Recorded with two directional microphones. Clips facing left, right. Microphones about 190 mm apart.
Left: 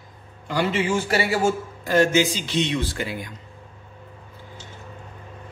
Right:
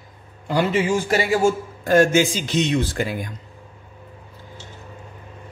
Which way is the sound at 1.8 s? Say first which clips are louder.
Right 3 dB; 50° right (ahead or behind).